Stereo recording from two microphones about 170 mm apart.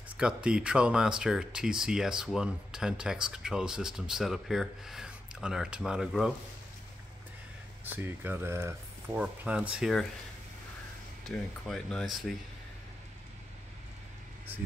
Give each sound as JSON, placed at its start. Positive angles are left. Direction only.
{"t": 0.2, "sound": "speech", "side_deg": -5}
{"t": 7.8, "sound": "speech", "side_deg": -10}
{"t": 11.2, "sound": "speech", "side_deg": 0}